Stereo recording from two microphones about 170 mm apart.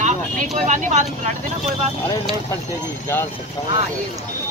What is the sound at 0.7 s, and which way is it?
Speech, 45° right (ahead or behind).